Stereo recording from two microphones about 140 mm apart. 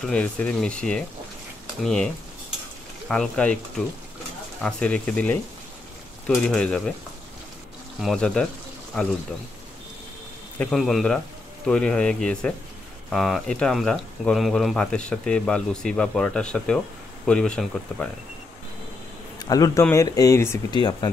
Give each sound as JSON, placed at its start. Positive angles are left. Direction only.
{"t": 0.0, "sound": "speech", "side_deg": 10}
{"t": 3.1, "sound": "speech", "side_deg": 10}
{"t": 8.0, "sound": "speech", "side_deg": 5}
{"t": 10.6, "sound": "speech", "side_deg": 0}
{"t": 19.4, "sound": "speech", "side_deg": 25}
{"t": 20.7, "sound": "speech", "side_deg": 30}